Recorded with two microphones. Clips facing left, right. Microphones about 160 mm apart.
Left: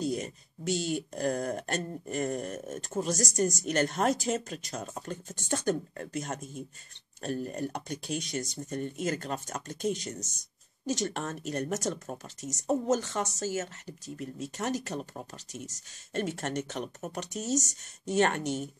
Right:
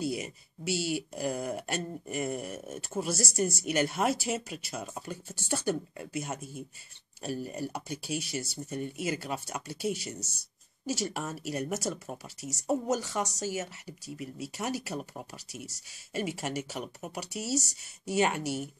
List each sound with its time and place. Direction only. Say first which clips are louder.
0.0 s speech: left 1 dB; 5° right (ahead or behind)